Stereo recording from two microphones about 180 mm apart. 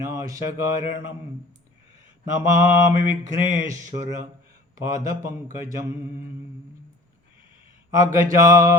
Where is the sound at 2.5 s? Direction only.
15° right (ahead or behind).